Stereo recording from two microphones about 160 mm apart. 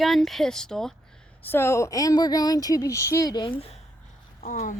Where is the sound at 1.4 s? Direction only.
15° left (ahead or behind).